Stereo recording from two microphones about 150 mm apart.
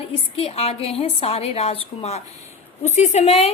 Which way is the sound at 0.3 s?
40° left (ahead or behind).